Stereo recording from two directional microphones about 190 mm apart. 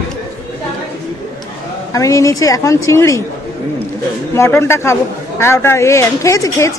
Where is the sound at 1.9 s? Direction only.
15° left (ahead or behind).